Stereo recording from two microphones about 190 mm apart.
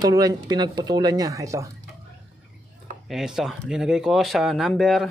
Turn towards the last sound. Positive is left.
turn(degrees=0)  # may be behind; listen again after turning